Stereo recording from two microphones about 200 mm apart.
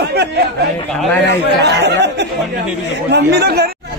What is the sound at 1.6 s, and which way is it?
Speech, 60° right (ahead or behind).